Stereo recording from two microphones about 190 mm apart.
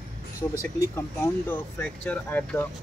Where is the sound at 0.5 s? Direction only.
15° left (ahead or behind).